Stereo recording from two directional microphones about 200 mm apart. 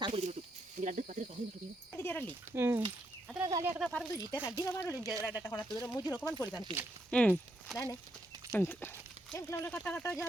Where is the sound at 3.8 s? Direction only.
5° left (ahead or behind).